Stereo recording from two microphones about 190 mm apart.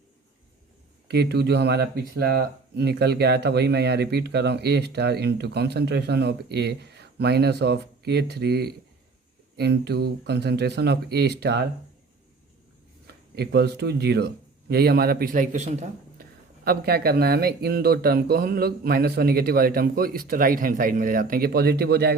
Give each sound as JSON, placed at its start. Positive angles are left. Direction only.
{"t": 1.0, "sound": "speech", "side_deg": -60}
{"t": 13.3, "sound": "speech", "side_deg": -60}
{"t": 16.6, "sound": "speech", "side_deg": -55}